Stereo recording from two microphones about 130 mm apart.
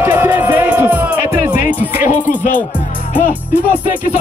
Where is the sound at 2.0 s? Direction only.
80° left.